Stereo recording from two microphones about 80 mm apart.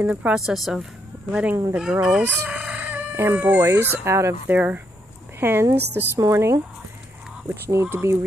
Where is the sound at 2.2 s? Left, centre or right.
Centre.